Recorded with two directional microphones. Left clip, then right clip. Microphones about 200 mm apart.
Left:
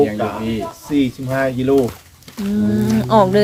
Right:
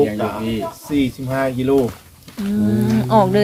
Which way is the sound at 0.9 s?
15° right (ahead or behind).